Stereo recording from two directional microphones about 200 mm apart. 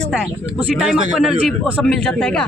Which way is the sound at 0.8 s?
Centre (ahead or behind).